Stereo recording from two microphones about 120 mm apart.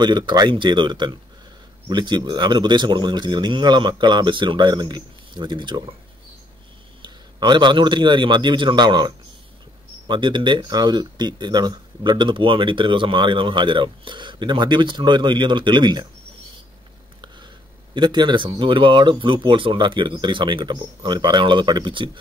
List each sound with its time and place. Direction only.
0.0 s speech: 35° right (ahead or behind)
7.0 s a man's voice: 40° right (ahead or behind)
17.9 s speech: 40° right (ahead or behind)